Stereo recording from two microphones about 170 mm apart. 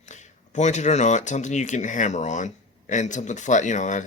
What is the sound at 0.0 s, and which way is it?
Speech, 45° left (ahead or behind).